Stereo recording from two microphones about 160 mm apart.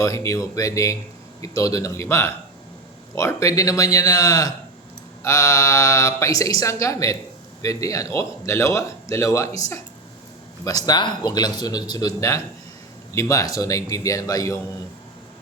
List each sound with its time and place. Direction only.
0.0 s speech: 20° left (ahead or behind)